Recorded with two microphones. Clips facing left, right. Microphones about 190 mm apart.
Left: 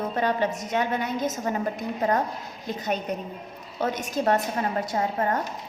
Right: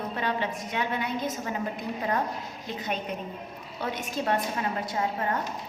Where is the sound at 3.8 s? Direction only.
45° left (ahead or behind).